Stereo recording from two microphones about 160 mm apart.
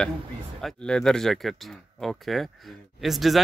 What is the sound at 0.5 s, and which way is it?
Speech, 5° left (ahead or behind).